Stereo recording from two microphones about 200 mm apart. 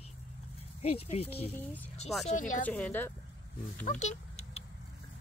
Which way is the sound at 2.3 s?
40° left (ahead or behind).